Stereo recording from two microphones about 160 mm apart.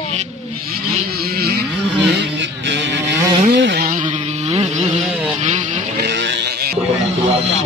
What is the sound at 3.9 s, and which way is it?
Vehicle, 50° right (ahead or behind).